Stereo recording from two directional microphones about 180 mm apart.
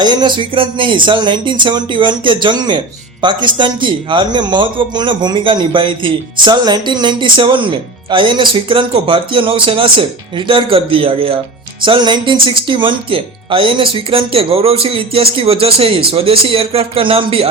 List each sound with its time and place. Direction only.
0.0 s speech: 25° right (ahead or behind)